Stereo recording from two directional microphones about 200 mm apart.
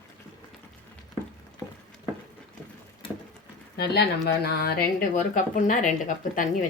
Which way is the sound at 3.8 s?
55° left (ahead or behind).